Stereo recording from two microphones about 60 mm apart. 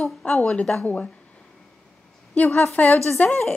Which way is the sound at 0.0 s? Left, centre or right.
Centre.